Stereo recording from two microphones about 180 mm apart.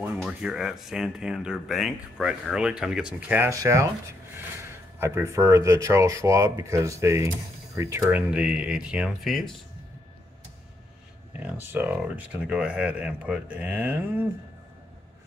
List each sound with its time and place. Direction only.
0.0 s speech: 5° right (ahead or behind)
4.9 s speech: 15° right (ahead or behind)
11.3 s speech: 10° right (ahead or behind)